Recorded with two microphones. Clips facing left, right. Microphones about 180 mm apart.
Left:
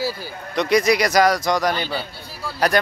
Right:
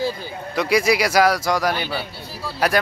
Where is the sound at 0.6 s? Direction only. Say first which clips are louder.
Left 1 dB; 5° right (ahead or behind).